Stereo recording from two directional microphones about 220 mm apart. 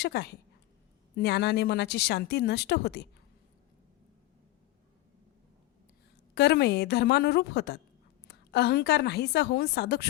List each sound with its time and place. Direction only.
0.0 s speech: 50° left (ahead or behind)
6.3 s speech: 50° left (ahead or behind)